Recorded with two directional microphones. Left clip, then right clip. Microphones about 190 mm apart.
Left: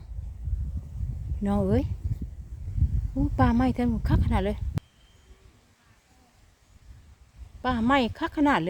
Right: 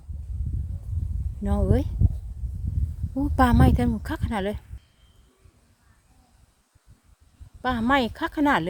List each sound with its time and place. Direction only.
1.5 s speech: centre (ahead or behind)
3.2 s speech: 20° right (ahead or behind); by 4.6 s 5° right (ahead or behind)
7.6 s speech: 10° right (ahead or behind)